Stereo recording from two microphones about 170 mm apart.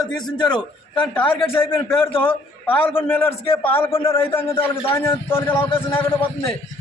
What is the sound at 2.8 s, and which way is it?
Speech, 35° left (ahead or behind).